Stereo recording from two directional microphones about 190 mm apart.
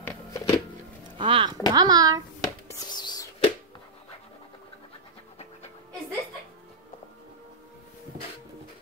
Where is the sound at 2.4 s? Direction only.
20° left (ahead or behind).